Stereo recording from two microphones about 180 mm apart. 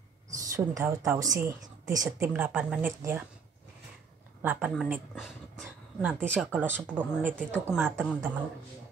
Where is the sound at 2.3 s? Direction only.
5° right (ahead or behind).